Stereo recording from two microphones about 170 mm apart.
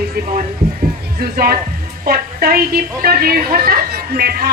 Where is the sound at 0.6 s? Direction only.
35° right (ahead or behind).